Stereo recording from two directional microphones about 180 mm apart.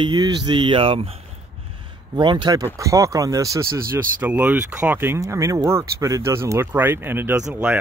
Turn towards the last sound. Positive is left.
turn(degrees=-10)  # may be behind; listen again after turning